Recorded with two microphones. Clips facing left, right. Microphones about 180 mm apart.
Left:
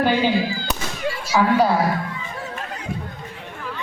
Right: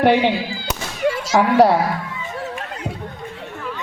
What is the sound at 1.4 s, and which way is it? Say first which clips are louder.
Speech: right 4 dB; 70° right (ahead or behind).